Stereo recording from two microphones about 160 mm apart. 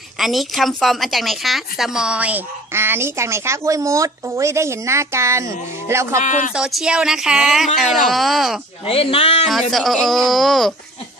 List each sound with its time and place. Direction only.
0.2 s a woman's voice: centre (ahead or behind); by 6.1 s 15° right (ahead or behind)
6.2 s speech: 50° left (ahead or behind)
6.5 s speech: 5° right (ahead or behind)
8.8 s speech: 35° left (ahead or behind)
9.5 s speech: centre (ahead or behind)